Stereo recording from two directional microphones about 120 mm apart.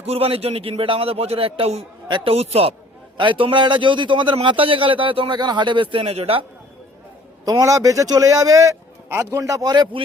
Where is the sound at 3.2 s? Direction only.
45° right (ahead or behind).